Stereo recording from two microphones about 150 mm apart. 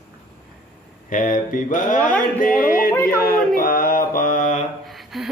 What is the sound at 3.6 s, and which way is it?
Mantra, 70° left (ahead or behind).